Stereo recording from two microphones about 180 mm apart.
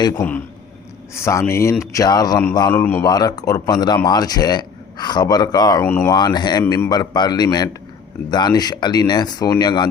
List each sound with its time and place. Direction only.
0.2 s a man's voice: 10° left (ahead or behind)
2.8 s a man's voice: 10° left (ahead or behind)
3.1 s speech: 20° left (ahead or behind)
5.8 s a man's voice: 10° left (ahead or behind)
6.1 s speech: 25° left (ahead or behind)